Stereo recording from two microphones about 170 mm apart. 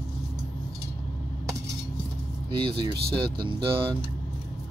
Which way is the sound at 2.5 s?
30° right (ahead or behind).